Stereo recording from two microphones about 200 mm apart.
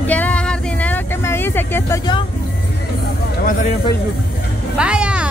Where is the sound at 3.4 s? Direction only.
40° left (ahead or behind).